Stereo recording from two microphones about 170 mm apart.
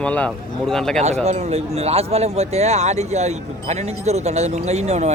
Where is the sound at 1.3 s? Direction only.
40° right (ahead or behind).